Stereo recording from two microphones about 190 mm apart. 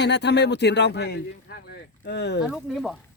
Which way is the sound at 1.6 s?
65° left (ahead or behind).